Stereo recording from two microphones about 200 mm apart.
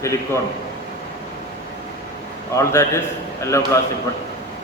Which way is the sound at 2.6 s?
15° left (ahead or behind).